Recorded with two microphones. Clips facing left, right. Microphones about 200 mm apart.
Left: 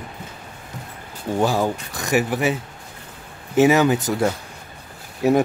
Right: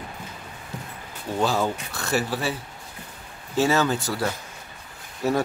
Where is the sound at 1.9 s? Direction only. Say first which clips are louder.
Left 5 dB; 15° left (ahead or behind).